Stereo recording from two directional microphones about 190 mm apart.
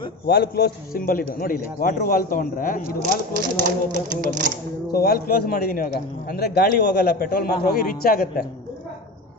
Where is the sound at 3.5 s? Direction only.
45° right (ahead or behind).